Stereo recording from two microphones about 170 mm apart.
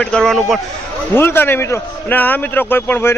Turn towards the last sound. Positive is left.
turn(degrees=10)  # may be behind; listen again after turning